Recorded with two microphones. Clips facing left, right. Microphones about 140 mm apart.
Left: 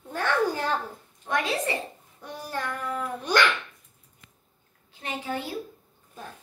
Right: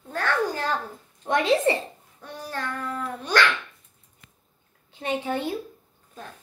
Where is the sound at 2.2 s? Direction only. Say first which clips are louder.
Even; 15° left (ahead or behind).